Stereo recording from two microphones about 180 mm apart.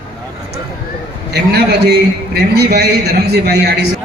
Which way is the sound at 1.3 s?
65° right (ahead or behind).